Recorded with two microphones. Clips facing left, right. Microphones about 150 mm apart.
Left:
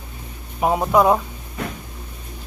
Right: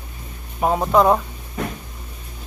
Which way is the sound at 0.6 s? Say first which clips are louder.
Even; 10° left (ahead or behind).